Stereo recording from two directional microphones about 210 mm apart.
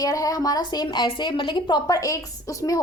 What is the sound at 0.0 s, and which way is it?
A woman's voice, 15° left (ahead or behind).